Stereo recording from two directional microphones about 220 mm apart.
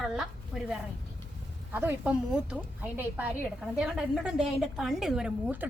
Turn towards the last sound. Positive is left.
turn(degrees=-5)  # may be behind; listen again after turning